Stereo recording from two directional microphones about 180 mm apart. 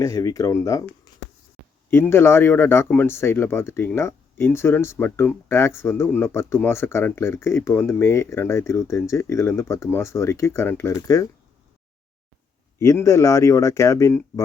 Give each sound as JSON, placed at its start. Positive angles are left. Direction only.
{"t": 0.0, "sound": "speech", "side_deg": 20}
{"t": 1.9, "sound": "speech", "side_deg": 15}
{"t": 12.8, "sound": "speech", "side_deg": 15}